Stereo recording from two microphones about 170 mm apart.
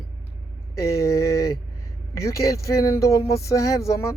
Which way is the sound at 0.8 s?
15° left (ahead or behind).